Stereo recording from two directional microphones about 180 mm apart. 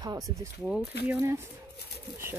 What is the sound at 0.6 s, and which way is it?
Speech, 5° right (ahead or behind).